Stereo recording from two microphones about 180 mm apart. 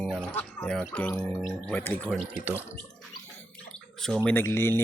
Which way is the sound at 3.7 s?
Centre (ahead or behind).